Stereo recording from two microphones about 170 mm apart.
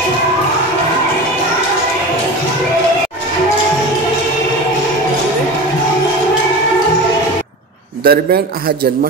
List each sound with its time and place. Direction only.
8.0 s a man's voice: 65° right (ahead or behind)